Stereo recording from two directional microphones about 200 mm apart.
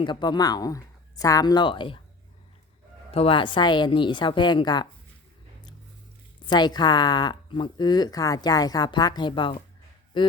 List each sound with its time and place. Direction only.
0.0 s speech: 25° left (ahead or behind)
3.1 s speech: 30° left (ahead or behind)
6.4 s speech: 20° left (ahead or behind)